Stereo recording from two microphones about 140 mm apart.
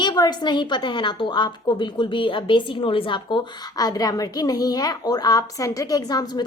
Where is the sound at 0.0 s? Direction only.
30° left (ahead or behind).